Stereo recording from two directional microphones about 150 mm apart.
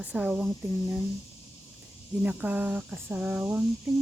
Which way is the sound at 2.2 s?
10° right (ahead or behind).